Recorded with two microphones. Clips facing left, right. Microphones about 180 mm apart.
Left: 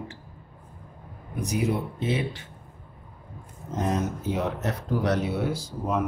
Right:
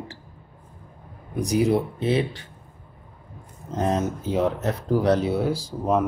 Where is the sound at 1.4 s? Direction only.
35° right (ahead or behind).